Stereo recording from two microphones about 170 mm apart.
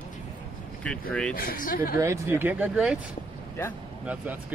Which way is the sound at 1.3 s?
60° left (ahead or behind).